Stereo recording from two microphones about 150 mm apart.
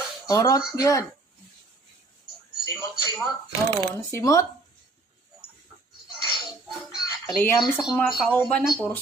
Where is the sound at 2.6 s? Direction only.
20° left (ahead or behind).